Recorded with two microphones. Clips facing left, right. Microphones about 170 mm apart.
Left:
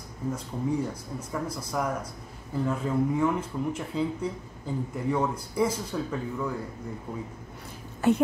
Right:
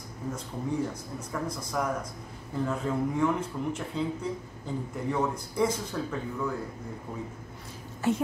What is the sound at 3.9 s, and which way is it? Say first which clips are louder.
A man's voice: left 4 dB; 5° left (ahead or behind).